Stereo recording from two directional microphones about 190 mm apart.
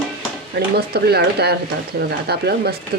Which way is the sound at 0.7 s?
55° right (ahead or behind).